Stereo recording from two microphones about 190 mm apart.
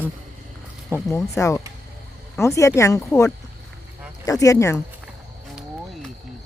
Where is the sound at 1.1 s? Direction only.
15° left (ahead or behind).